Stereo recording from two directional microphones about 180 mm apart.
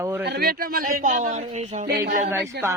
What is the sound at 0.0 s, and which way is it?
Speech, 15° right (ahead or behind).